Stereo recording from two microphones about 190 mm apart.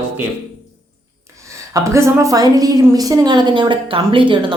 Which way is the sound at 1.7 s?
15° right (ahead or behind).